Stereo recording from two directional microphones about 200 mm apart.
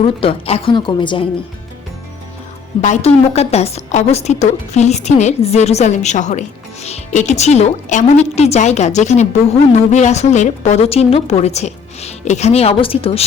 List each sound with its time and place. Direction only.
0.0 s a woman's voice: 30° left (ahead or behind)
2.8 s a woman's voice: 35° left (ahead or behind)